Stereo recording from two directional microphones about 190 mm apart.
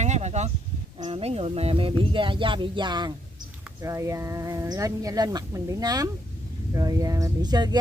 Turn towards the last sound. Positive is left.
turn(degrees=-20)  # may be behind; listen again after turning